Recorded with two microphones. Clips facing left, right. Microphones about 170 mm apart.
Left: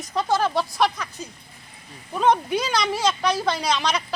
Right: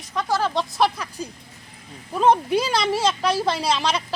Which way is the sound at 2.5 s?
30° right (ahead or behind).